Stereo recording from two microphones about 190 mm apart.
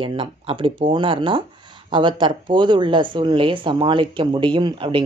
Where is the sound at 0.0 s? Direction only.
25° right (ahead or behind).